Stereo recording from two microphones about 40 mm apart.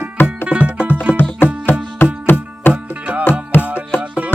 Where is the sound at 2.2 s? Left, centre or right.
Left.